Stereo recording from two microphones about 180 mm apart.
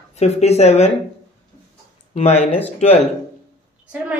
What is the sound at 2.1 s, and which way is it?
Speech, 35° left (ahead or behind).